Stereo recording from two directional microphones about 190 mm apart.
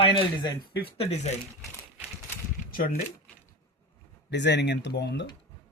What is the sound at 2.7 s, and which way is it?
Speech, 50° left (ahead or behind).